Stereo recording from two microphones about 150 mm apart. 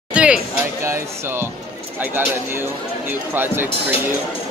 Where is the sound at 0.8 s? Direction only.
15° right (ahead or behind).